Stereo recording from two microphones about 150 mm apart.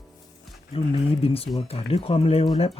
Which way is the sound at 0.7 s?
40° left (ahead or behind).